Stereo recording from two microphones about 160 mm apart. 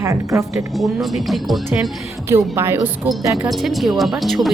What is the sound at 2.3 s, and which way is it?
A woman's voice, 15° right (ahead or behind).